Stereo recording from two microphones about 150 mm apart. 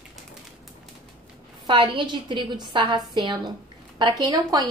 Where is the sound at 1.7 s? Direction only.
30° right (ahead or behind).